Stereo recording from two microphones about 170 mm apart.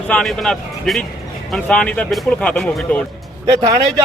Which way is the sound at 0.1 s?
5° left (ahead or behind).